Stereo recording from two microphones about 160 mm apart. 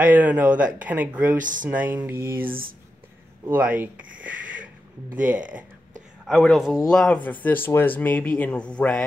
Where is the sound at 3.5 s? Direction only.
10° right (ahead or behind).